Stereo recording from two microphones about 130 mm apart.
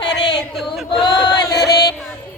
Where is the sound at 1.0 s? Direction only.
30° left (ahead or behind).